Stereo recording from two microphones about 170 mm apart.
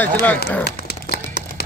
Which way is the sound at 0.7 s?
70° left (ahead or behind).